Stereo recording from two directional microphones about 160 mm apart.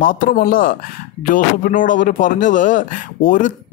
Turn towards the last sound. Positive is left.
turn(degrees=55)  # may be behind; listen again after turning